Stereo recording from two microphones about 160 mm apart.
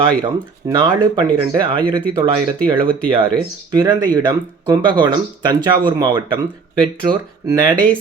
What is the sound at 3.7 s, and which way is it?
Speech, 25° right (ahead or behind).